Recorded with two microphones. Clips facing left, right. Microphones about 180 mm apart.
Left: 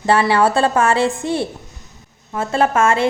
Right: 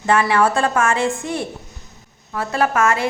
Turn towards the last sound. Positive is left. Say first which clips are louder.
# left 3 dB
turn(degrees=30)  # may be behind; listen again after turning